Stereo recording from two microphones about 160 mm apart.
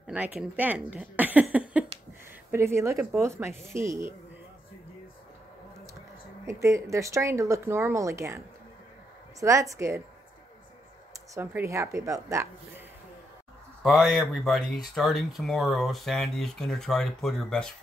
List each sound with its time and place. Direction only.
0.0 s speech: 5° right (ahead or behind)
6.4 s speech: 20° right (ahead or behind)
9.4 s speech: 20° right (ahead or behind)
11.3 s speech: 15° right (ahead or behind)
13.8 s speech: centre (ahead or behind)